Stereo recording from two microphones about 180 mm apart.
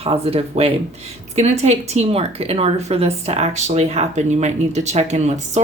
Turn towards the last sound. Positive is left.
turn(degrees=-40)  # may be behind; listen again after turning